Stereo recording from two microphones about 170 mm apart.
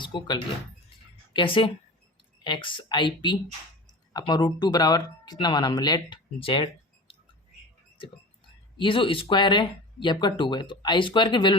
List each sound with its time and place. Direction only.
0.0 s a woman's voice: 30° left (ahead or behind)
8.8 s speech: 30° left (ahead or behind)